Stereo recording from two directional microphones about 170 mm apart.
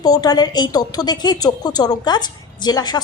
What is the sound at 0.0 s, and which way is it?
A woman's voice, 25° left (ahead or behind).